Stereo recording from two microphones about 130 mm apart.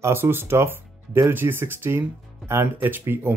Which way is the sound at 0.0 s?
20° right (ahead or behind).